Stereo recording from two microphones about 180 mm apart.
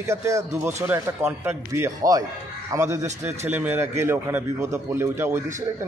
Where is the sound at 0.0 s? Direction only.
15° right (ahead or behind).